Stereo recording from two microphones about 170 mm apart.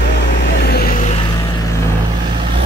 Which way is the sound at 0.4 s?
70° left (ahead or behind).